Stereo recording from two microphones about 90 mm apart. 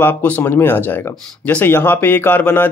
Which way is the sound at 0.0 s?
20° left (ahead or behind).